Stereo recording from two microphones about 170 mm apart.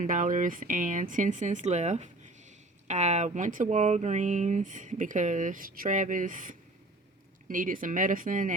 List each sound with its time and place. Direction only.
0.0 s speech: 50° right (ahead or behind)